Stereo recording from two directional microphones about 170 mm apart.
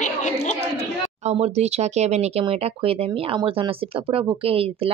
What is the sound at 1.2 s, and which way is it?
Speech, 40° right (ahead or behind).